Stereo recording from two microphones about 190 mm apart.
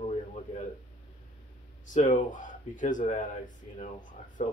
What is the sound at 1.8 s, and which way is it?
Speech, 40° left (ahead or behind).